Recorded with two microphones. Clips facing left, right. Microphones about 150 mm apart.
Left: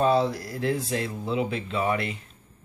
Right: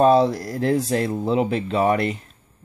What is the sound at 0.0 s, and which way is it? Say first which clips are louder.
Speech: right 6 dB; 45° right (ahead or behind).